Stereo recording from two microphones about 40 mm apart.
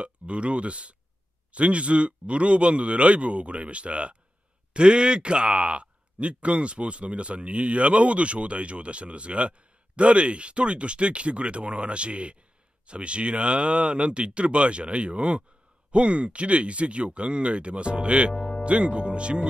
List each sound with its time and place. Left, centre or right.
0.0 s a man's voice: right